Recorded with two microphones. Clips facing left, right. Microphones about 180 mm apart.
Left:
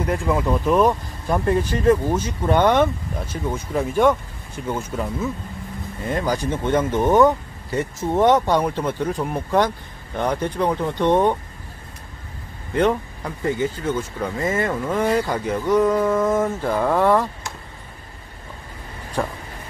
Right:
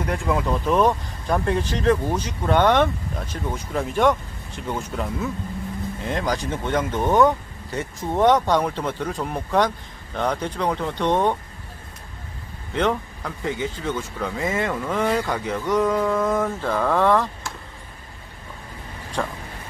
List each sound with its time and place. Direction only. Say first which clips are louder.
0.0 s speech: left 2 dB; centre (ahead or behind)
6.5 s speech: left 4 dB; 15° left (ahead or behind)
12.7 s speech: left 3 dB; 10° left (ahead or behind)
14.7 s speech: left 2 dB; 10° left (ahead or behind)
19.2 s speech: left 2 dB; 10° left (ahead or behind)